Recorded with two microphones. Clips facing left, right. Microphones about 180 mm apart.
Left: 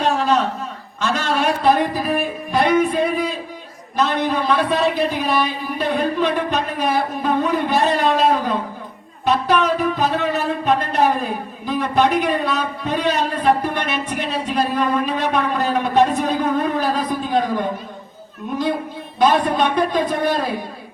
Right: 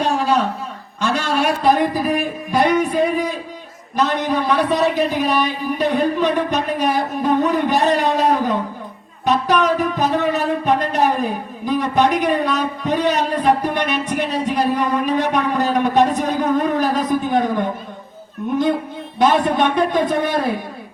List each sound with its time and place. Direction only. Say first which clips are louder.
0.0 s a sound: even; 15° right (ahead or behind)
1.0 s a man's voice: right 1 dB; 10° right (ahead or behind)
3.9 s a man's voice: right 1 dB; 15° right (ahead or behind)
19.3 s speech: right 1 dB; 25° right (ahead or behind)